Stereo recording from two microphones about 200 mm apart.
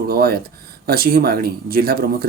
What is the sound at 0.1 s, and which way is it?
Speech, 50° right (ahead or behind).